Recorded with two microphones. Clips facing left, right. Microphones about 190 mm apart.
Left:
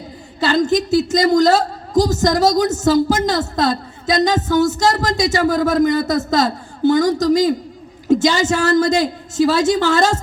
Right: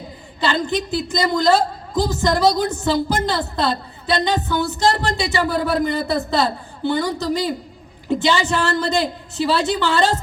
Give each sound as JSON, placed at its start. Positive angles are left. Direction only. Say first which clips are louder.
{"t": 0.3, "sound": "a woman's voice", "louder": "left 5 dB", "side_deg": 40}